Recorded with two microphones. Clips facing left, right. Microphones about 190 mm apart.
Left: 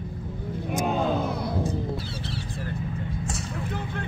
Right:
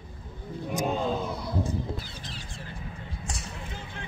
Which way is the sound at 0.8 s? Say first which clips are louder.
Left 3 dB; 70° left (ahead or behind).